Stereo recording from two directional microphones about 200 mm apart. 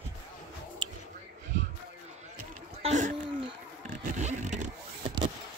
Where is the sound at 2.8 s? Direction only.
35° right (ahead or behind).